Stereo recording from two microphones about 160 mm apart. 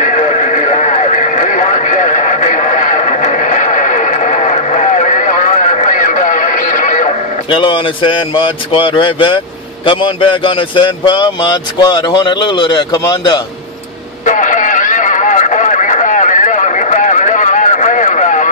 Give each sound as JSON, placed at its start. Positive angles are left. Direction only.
{"t": 0.0, "sound": "radio", "side_deg": 50}
{"t": 7.5, "sound": "a man's voice", "side_deg": 30}
{"t": 14.2, "sound": "a sound", "side_deg": 50}